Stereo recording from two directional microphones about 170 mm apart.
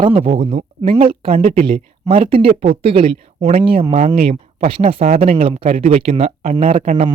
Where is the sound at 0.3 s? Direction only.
35° right (ahead or behind).